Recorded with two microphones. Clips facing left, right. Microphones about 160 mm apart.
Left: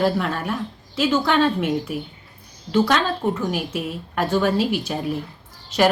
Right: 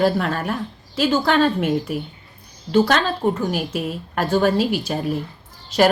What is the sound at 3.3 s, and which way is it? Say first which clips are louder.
A woman's voice: right 2 dB; 40° right (ahead or behind).